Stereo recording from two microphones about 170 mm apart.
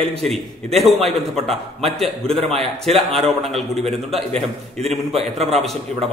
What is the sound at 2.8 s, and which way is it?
Speech, centre (ahead or behind).